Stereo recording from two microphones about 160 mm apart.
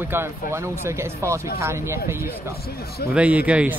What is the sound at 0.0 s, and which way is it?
Speech, 15° right (ahead or behind).